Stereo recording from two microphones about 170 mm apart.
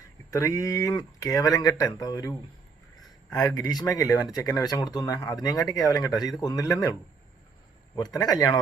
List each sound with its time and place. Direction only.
0.3 s speech: 20° left (ahead or behind)
7.9 s speech: 20° left (ahead or behind)